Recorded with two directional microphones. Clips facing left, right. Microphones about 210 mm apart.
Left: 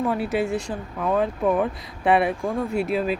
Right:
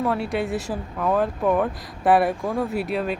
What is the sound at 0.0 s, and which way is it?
Speech, centre (ahead or behind).